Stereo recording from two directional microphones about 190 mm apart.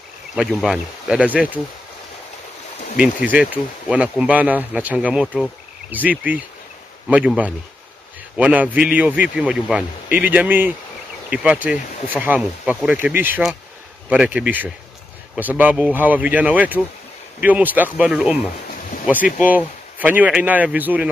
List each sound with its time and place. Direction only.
0.4 s speech: centre (ahead or behind)
3.0 s speech: 5° right (ahead or behind)
19.1 s speech: 45° left (ahead or behind)
19.5 s speech: 10° right (ahead or behind)